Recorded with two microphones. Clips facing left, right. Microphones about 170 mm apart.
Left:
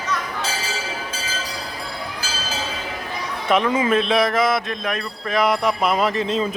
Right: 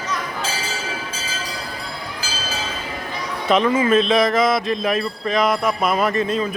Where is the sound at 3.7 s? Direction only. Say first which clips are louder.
Right 3 dB; 15° left (ahead or behind).